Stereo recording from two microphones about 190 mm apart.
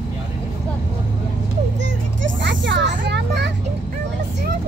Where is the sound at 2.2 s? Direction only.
75° right (ahead or behind).